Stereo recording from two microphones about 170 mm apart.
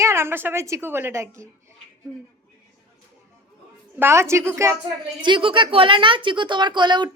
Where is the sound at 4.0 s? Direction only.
15° right (ahead or behind).